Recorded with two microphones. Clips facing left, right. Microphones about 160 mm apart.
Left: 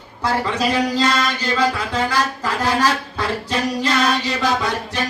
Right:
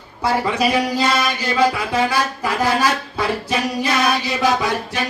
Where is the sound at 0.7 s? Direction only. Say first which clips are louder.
Even; 10° right (ahead or behind).